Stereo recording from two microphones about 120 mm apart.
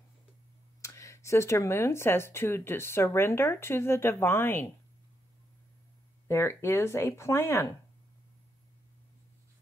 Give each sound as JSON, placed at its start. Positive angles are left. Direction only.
{"t": 0.8, "sound": "speech", "side_deg": 25}
{"t": 6.2, "sound": "speech", "side_deg": 20}